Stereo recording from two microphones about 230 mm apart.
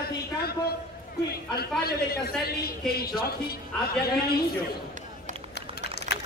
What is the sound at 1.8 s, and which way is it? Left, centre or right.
A man's voice, left.